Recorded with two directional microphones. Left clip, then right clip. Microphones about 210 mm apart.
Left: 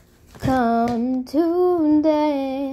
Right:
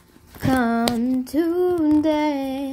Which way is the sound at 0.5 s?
Centre (ahead or behind).